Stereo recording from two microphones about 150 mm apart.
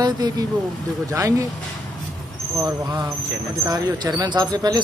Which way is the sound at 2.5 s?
25° right (ahead or behind).